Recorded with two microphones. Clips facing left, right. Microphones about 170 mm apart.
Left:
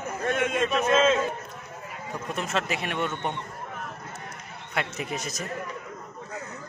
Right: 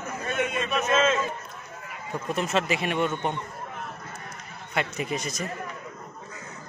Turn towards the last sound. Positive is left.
turn(degrees=0)  # may be behind; listen again after turning